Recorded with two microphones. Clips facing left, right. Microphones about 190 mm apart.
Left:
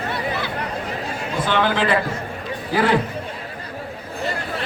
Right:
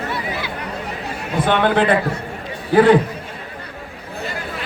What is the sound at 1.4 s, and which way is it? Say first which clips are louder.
Speech: right 4 dB; 60° right (ahead or behind).